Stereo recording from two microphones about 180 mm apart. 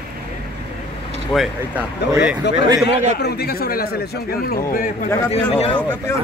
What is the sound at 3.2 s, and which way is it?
A man's voice, 60° left (ahead or behind).